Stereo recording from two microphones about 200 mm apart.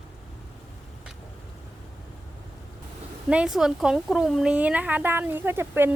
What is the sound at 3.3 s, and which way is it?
Speech, 5° right (ahead or behind).